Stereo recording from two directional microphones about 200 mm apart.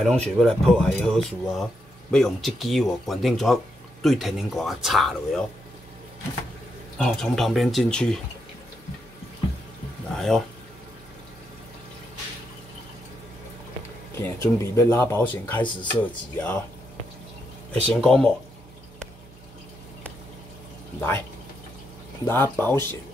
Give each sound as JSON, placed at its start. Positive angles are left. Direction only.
{"t": 0.0, "sound": "speech", "side_deg": 0}
{"t": 7.0, "sound": "speech", "side_deg": 5}
{"t": 10.1, "sound": "speech", "side_deg": 0}
{"t": 14.1, "sound": "speech", "side_deg": 15}
{"t": 15.6, "sound": "speech", "side_deg": 25}
{"t": 16.0, "sound": "speech", "side_deg": 10}
{"t": 17.9, "sound": "speech", "side_deg": 0}
{"t": 22.2, "sound": "speech", "side_deg": 10}